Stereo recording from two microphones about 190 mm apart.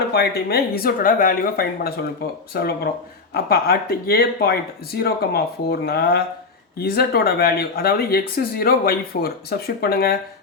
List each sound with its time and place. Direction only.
0.1 s speech: 55° left (ahead or behind)